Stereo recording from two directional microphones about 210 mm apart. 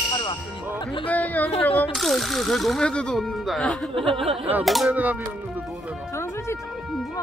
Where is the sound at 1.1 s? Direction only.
10° left (ahead or behind); by 5.2 s 5° right (ahead or behind).